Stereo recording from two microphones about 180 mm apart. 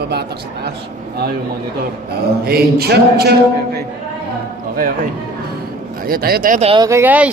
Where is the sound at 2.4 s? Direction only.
60° right (ahead or behind).